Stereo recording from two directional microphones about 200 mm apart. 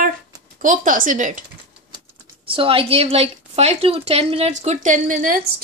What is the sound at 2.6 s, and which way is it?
A woman's voice, 30° right (ahead or behind).